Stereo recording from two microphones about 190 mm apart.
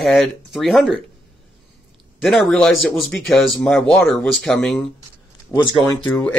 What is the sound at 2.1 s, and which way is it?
A man's voice, centre (ahead or behind).